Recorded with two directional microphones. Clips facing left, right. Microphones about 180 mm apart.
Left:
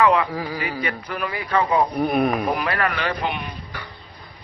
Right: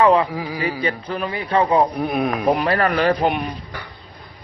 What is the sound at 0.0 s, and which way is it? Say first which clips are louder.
A man's voice: right 3 dB; 30° right (ahead or behind).